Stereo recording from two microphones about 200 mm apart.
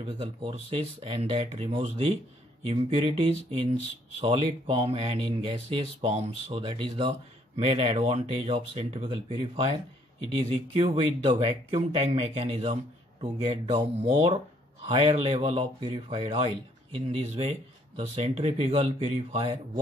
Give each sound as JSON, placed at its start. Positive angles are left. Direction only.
{"t": 0.2, "sound": "speech", "side_deg": -25}
{"t": 10.8, "sound": "speech", "side_deg": -30}